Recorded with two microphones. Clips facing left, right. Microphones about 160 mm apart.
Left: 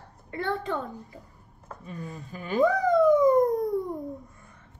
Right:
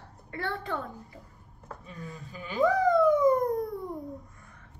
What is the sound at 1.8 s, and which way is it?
Speech, 50° left (ahead or behind).